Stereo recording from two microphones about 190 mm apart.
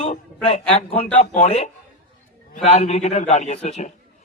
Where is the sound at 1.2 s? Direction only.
35° left (ahead or behind).